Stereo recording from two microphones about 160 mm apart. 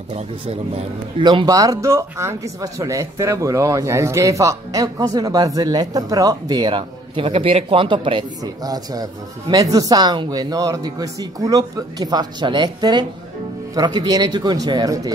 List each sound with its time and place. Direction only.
0.1 s a man's voice: 40° right (ahead or behind)